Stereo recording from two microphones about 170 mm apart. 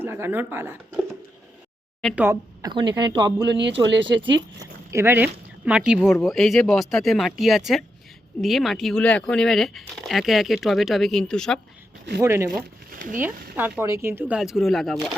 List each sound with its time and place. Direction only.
0.0 s speech: 15° right (ahead or behind)
2.1 s speech: 15° right (ahead or behind)
3.8 s speech: 90° right
4.4 s speech: 20° right (ahead or behind); by 11.6 s 5° left (ahead or behind)
12.2 s speech: 15° right (ahead or behind); by 15.1 s centre (ahead or behind)